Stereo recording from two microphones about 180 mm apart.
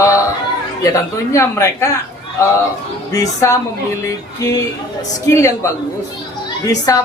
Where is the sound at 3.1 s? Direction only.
20° left (ahead or behind).